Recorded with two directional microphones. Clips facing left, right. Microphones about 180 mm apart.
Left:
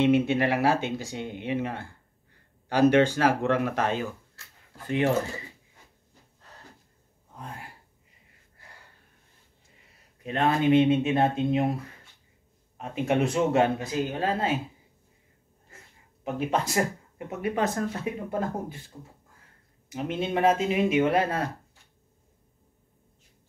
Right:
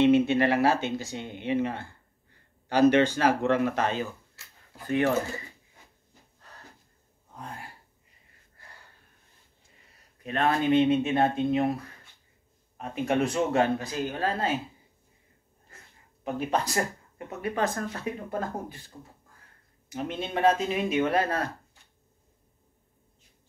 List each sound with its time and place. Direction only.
0.0 s speech: 10° left (ahead or behind)
4.8 s speech: 25° left (ahead or behind)
10.2 s speech: 25° left (ahead or behind)
12.7 s speech: 25° left (ahead or behind)
16.3 s speech: 25° left (ahead or behind)
19.9 s speech: 20° left (ahead or behind)